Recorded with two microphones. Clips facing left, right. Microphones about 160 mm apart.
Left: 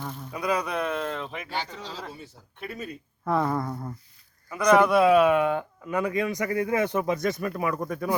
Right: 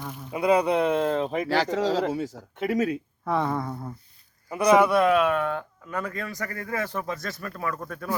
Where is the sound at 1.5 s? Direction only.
90° right.